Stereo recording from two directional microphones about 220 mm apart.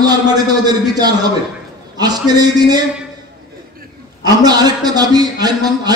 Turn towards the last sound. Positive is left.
turn(degrees=-20)  # may be behind; listen again after turning